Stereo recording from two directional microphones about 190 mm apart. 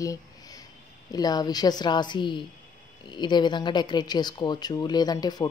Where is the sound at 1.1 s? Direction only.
20° left (ahead or behind).